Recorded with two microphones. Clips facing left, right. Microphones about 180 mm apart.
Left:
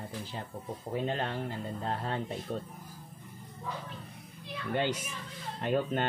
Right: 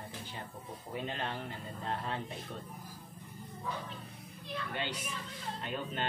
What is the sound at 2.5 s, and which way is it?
Speech, 45° left (ahead or behind).